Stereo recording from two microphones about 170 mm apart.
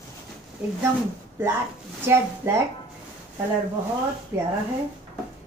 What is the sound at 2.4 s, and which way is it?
Speech, 15° right (ahead or behind).